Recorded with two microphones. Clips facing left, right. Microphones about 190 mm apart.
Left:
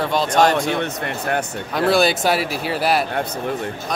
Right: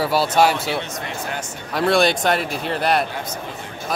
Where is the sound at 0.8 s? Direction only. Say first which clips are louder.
Left 4 dB; 60° left (ahead or behind).